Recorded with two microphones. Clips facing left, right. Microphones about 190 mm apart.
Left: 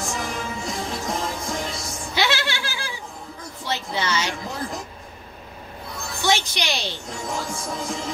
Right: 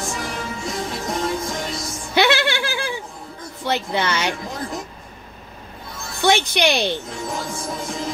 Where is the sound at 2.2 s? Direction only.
60° right (ahead or behind).